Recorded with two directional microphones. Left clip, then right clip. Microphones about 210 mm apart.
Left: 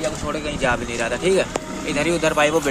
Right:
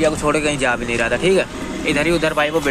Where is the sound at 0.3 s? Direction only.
10° right (ahead or behind).